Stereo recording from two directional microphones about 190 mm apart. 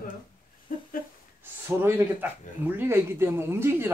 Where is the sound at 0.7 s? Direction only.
45° left (ahead or behind).